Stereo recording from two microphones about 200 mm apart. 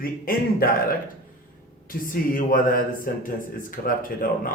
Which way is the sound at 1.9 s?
45° left (ahead or behind).